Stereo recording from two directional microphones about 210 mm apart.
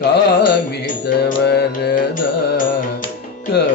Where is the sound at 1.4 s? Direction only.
50° left (ahead or behind).